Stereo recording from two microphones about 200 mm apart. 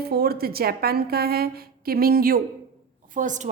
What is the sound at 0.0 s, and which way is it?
A woman's voice, 50° right (ahead or behind).